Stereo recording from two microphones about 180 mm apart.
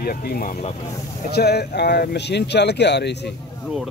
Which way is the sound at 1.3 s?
65° left (ahead or behind).